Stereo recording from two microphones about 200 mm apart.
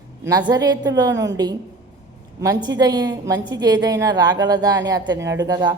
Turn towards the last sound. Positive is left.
turn(degrees=-20)  # may be behind; listen again after turning